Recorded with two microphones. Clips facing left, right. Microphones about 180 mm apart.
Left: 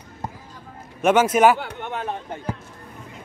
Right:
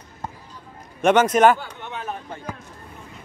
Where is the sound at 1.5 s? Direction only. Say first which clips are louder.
Left 4 dB; 65° left (ahead or behind).